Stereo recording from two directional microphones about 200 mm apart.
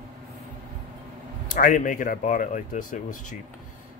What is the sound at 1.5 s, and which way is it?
A man's voice, 40° left (ahead or behind).